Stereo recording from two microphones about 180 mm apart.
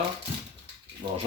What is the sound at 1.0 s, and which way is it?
Speech, 30° right (ahead or behind).